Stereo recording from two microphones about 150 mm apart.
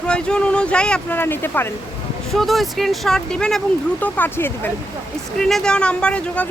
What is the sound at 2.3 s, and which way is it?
Speech, centre (ahead or behind).